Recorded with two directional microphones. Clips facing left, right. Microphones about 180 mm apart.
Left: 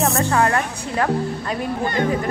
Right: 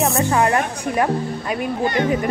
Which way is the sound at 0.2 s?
15° right (ahead or behind).